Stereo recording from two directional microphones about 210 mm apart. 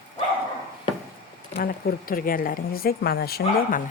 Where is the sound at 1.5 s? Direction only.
45° left (ahead or behind).